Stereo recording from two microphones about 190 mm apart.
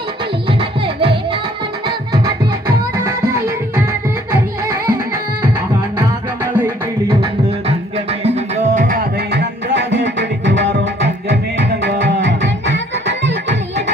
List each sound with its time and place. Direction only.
0.6 s music: 30° right (ahead or behind)
4.3 s music: 15° right (ahead or behind)
6.0 s music: 15° right (ahead or behind)
7.9 s music: 35° right (ahead or behind)
9.1 s music: 60° right (ahead or behind)